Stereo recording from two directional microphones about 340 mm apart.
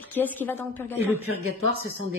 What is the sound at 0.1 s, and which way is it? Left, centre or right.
Speech, centre.